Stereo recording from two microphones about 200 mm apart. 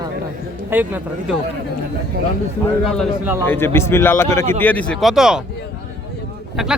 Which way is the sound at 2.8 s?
5° left (ahead or behind).